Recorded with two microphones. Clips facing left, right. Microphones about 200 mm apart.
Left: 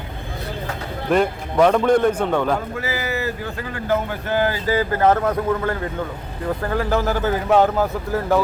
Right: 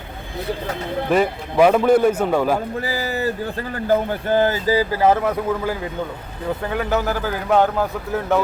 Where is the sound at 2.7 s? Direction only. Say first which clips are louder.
Right 1 dB; 35° right (ahead or behind).